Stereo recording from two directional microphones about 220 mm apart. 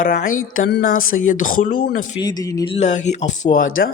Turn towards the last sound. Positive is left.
turn(degrees=40)  # may be behind; listen again after turning